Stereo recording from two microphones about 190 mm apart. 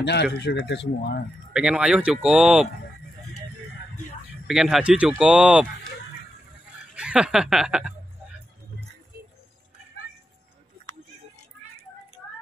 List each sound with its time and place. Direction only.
0.0 s speech: 65° left (ahead or behind)
1.5 s speech: 5° right (ahead or behind)
4.5 s speech: centre (ahead or behind)
7.0 s a sound: 5° right (ahead or behind)